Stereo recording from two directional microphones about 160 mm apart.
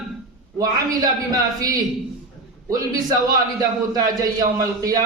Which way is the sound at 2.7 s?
20° right (ahead or behind).